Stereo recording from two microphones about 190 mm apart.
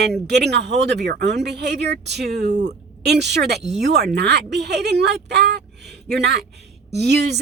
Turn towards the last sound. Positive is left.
turn(degrees=-60)  # may be behind; listen again after turning